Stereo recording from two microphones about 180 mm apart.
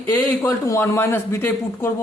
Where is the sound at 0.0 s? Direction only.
10° left (ahead or behind).